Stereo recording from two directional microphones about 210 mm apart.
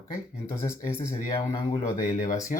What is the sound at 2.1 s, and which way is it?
Speech, 40° left (ahead or behind).